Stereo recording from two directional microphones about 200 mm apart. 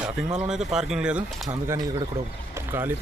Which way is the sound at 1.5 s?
20° right (ahead or behind).